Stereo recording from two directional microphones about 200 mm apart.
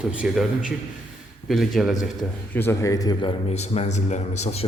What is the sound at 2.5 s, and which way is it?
A man's voice, 10° left (ahead or behind).